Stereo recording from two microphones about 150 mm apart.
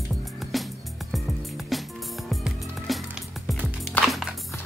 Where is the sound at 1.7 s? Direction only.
Centre (ahead or behind).